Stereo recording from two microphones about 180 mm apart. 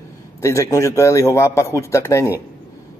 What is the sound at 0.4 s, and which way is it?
A man's voice, 15° left (ahead or behind).